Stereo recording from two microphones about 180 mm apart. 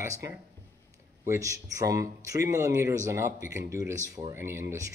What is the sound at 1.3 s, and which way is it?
A man's voice, 15° right (ahead or behind).